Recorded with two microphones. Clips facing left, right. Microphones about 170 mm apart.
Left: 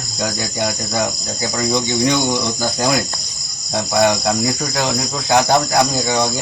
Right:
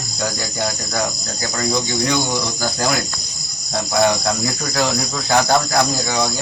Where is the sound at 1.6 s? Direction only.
20° left (ahead or behind).